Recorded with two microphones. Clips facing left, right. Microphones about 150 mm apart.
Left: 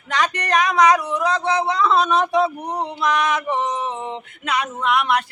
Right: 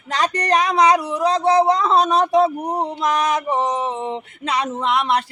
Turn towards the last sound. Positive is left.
turn(degrees=-30)  # may be behind; listen again after turning